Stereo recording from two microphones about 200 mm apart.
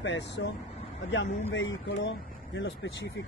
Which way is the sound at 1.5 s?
70° left (ahead or behind).